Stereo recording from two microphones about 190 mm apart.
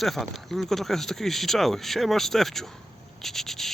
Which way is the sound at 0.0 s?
Centre (ahead or behind).